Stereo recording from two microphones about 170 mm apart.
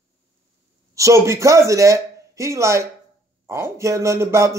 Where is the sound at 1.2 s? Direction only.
20° right (ahead or behind).